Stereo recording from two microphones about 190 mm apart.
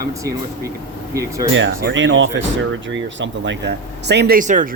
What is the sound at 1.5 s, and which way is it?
Speech, 75° right (ahead or behind).